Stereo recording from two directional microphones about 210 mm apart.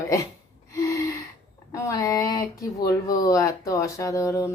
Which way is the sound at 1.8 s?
15° left (ahead or behind).